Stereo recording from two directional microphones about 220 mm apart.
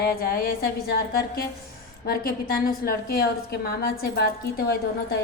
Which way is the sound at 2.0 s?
45° left (ahead or behind).